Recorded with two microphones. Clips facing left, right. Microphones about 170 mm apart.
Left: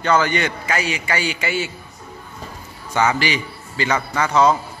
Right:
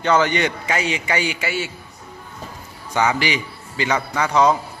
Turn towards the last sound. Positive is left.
turn(degrees=-15)  # may be behind; listen again after turning